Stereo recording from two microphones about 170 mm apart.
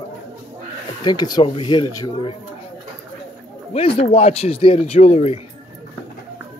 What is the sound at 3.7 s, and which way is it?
Speech, 35° left (ahead or behind).